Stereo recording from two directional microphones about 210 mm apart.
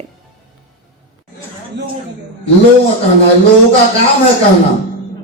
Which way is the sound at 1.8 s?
55° right (ahead or behind).